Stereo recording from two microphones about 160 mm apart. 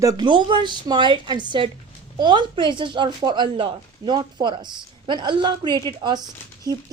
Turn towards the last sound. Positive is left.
turn(degrees=-25)  # may be behind; listen again after turning